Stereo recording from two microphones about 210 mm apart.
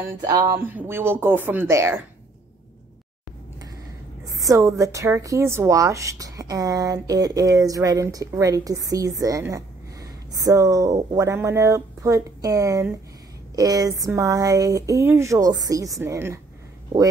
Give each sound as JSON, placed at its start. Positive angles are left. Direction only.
{"t": 0.3, "sound": "a woman's voice", "side_deg": -15}
{"t": 4.3, "sound": "a woman's voice", "side_deg": -15}